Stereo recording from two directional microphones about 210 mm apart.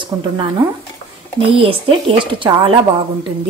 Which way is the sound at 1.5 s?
25° right (ahead or behind).